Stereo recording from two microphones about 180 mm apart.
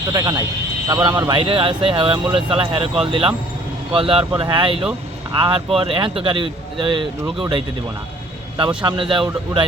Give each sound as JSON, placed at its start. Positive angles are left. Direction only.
{"t": 0.1, "sound": "speech", "side_deg": -20}
{"t": 8.8, "sound": "speech", "side_deg": -30}